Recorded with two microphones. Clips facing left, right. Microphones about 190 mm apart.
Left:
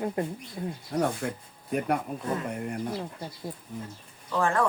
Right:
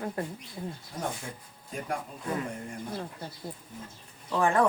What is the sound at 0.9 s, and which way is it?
Speech, 70° left (ahead or behind).